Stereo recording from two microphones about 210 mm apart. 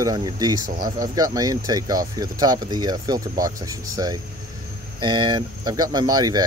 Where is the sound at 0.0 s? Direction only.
15° right (ahead or behind).